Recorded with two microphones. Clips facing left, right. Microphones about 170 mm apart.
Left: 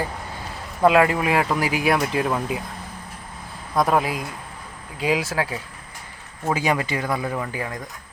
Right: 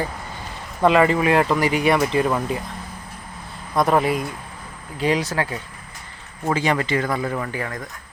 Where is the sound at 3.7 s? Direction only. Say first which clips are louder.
Right 2 dB; centre (ahead or behind).